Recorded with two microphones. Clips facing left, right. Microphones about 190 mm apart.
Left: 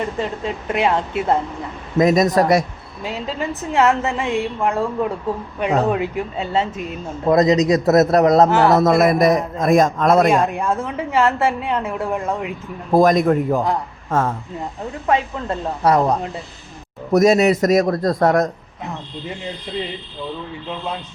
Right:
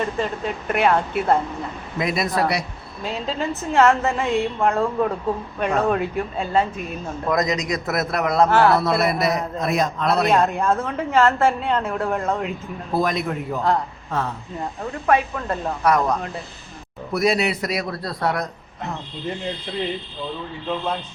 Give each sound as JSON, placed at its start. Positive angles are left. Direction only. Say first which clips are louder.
{"t": 0.2, "sound": "speech", "louder": "left 1 dB", "side_deg": 20}
{"t": 2.0, "sound": "a man's voice", "louder": "left 8 dB", "side_deg": 40}
{"t": 3.0, "sound": "a woman's voice", "louder": "left 1 dB", "side_deg": 15}
{"t": 8.4, "sound": "a woman's voice", "louder": "left 1 dB", "side_deg": 15}
{"t": 8.7, "sound": "a man's voice", "louder": "left 6 dB", "side_deg": 45}
{"t": 10.4, "sound": "a woman's voice", "louder": "even", "side_deg": 15}
{"t": 12.9, "sound": "a man's voice", "louder": "left 9 dB", "side_deg": 45}
{"t": 15.0, "sound": "speech", "louder": "even", "side_deg": 25}
{"t": 17.1, "sound": "a man's voice", "louder": "left 7 dB", "side_deg": 45}